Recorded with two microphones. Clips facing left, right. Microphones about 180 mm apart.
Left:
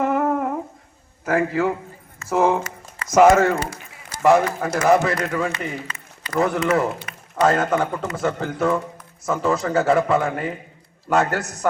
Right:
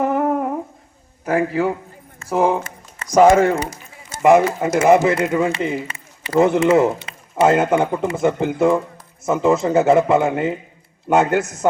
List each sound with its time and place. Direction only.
0.0 s humming: 15° right (ahead or behind)
1.2 s a man's voice: 15° right (ahead or behind)